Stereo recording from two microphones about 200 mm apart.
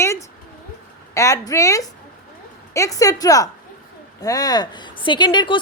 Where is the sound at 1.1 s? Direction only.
15° left (ahead or behind).